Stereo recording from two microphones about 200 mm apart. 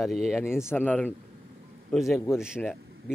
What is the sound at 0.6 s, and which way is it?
A man's voice, 10° left (ahead or behind).